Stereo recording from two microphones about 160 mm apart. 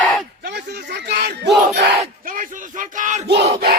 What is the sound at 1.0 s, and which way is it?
Battle cry, 90° right.